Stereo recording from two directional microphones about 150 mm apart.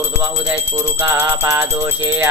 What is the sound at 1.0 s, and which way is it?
Music, 20° right (ahead or behind).